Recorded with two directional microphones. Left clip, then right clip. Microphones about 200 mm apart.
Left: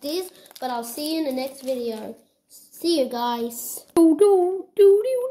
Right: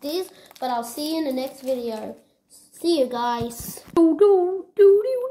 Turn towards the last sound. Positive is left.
turn(degrees=15)  # may be behind; listen again after turning